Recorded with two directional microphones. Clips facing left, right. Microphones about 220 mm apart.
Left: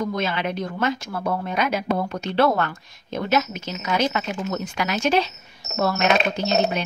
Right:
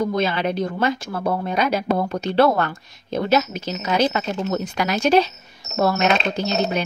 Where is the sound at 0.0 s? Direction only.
30° right (ahead or behind).